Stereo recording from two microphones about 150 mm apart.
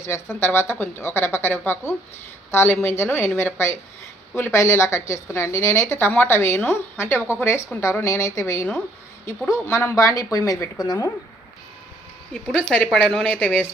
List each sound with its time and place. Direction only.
0.0 s a woman's voice: 15° left (ahead or behind)
12.5 s a woman's voice: 5° left (ahead or behind)